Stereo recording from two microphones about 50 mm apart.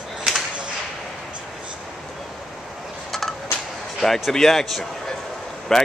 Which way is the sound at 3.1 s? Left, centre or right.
Centre.